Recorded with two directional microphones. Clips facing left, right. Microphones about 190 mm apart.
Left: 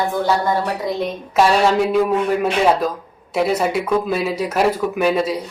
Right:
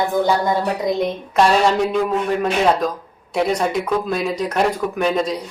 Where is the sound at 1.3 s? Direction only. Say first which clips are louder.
Left 1 dB; 5° left (ahead or behind).